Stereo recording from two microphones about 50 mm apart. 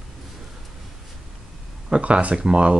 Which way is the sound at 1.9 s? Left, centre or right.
Right.